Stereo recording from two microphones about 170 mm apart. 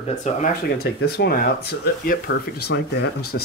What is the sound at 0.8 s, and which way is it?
Speech, 70° left (ahead or behind).